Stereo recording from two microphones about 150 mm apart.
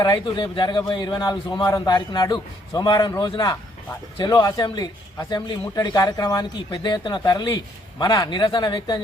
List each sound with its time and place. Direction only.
0.0 s a man's voice: 25° left (ahead or behind)